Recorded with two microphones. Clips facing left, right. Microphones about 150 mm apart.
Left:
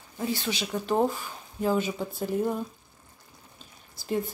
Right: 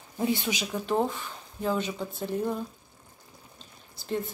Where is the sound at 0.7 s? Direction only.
Centre (ahead or behind).